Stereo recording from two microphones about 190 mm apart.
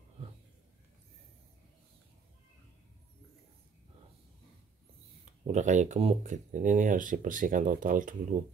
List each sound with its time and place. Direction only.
5.2 s speech: 40° right (ahead or behind)